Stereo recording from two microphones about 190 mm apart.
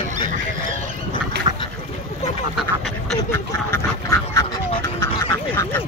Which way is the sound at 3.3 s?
15° left (ahead or behind).